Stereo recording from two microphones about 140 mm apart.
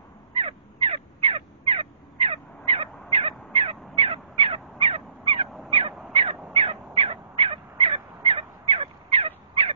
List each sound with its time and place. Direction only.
0.3 s crow: 40° right (ahead or behind)
6.5 s fowl: 40° right (ahead or behind)